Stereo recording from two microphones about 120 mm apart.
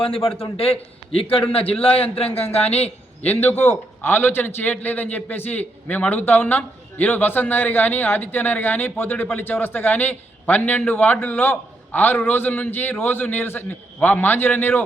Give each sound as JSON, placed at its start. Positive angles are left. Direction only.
{"t": 0.0, "sound": "a man's voice", "side_deg": 50}
{"t": 3.2, "sound": "a man's voice", "side_deg": 15}